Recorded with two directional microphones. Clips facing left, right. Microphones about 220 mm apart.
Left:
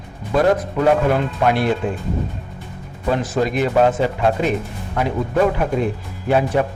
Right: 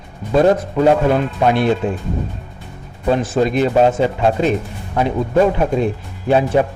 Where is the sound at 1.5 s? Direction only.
25° right (ahead or behind).